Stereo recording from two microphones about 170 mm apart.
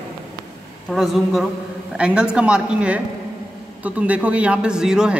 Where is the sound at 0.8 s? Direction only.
Centre (ahead or behind).